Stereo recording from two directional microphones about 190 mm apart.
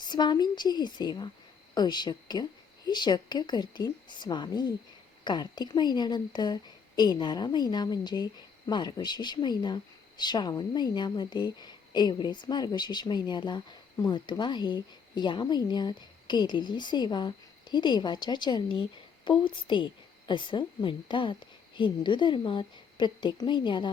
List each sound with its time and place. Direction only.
0.0 s a woman's voice: 20° left (ahead or behind)